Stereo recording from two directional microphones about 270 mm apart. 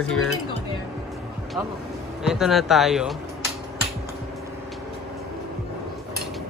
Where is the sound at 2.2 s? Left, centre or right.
Centre.